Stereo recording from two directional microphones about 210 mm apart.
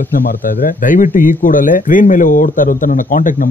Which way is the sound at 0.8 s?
35° left (ahead or behind).